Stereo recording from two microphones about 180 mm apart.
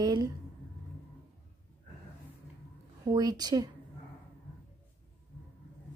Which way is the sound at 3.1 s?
20° right (ahead or behind).